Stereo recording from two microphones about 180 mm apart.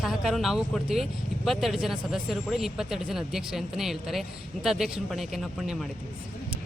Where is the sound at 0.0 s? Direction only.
Centre (ahead or behind).